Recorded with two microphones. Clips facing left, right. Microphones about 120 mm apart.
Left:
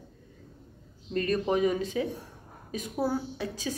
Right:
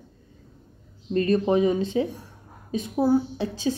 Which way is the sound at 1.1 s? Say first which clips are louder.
Right 6 dB; 30° right (ahead or behind).